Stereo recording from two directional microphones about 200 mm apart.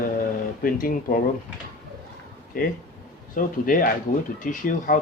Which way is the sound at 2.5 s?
45° left (ahead or behind).